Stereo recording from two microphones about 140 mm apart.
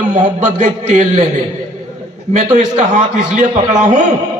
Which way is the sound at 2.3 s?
60° right (ahead or behind).